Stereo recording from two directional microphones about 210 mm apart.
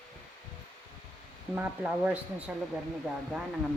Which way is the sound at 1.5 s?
5° right (ahead or behind).